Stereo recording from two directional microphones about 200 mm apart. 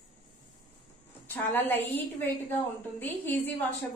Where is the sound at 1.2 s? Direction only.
10° left (ahead or behind).